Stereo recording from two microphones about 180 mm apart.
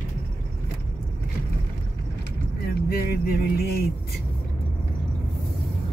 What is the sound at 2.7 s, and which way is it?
Vehicle, 60° left (ahead or behind).